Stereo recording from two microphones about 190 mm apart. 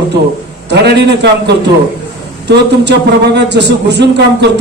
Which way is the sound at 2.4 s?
65° right (ahead or behind).